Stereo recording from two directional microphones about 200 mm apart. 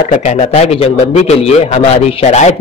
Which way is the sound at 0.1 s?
35° left (ahead or behind).